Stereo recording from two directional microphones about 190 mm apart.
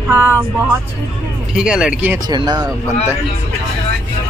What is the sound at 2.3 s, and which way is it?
Speech, 20° right (ahead or behind).